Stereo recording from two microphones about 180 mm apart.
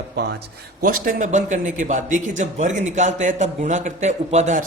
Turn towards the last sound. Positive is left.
turn(degrees=-40)  # may be behind; listen again after turning